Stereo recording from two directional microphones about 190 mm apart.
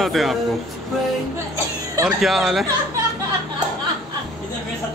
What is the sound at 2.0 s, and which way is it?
Speech, centre (ahead or behind).